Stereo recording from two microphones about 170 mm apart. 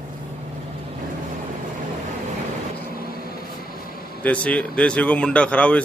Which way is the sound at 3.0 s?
60° left (ahead or behind).